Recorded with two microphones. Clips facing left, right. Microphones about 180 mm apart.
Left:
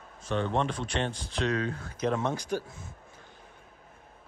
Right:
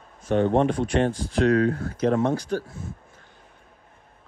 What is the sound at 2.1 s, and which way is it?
Speech, 55° right (ahead or behind).